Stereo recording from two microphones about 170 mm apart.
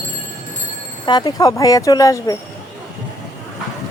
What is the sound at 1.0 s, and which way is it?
Speech, 25° left (ahead or behind).